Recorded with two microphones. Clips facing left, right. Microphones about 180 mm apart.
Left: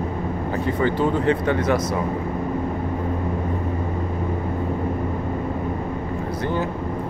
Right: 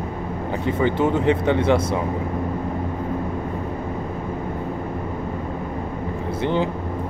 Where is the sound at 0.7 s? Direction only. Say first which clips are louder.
Right 1 dB; 20° right (ahead or behind).